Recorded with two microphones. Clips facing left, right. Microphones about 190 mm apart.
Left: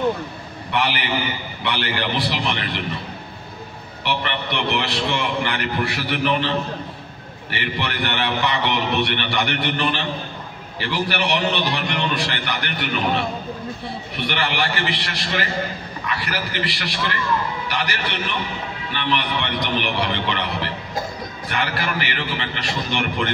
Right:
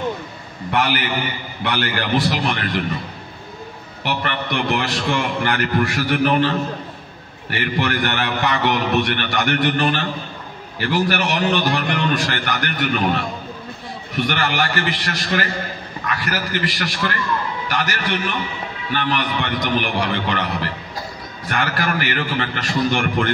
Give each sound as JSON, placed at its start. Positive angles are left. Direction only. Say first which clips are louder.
{"t": 0.7, "sound": "a man's voice", "louder": "right 2 dB", "side_deg": -45}
{"t": 4.0, "sound": "a man's voice", "louder": "right 1 dB", "side_deg": -45}
{"t": 7.5, "sound": "a man's voice", "louder": "right 5 dB", "side_deg": -45}